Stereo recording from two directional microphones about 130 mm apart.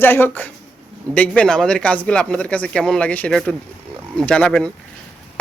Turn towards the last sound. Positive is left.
turn(degrees=10)  # may be behind; listen again after turning